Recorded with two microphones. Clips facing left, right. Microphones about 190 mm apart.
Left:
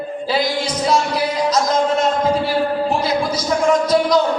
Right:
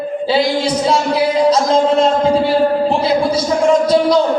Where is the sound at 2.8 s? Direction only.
30° right (ahead or behind).